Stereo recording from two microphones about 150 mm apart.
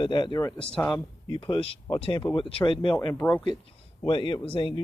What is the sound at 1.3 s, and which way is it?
Speech, 35° left (ahead or behind).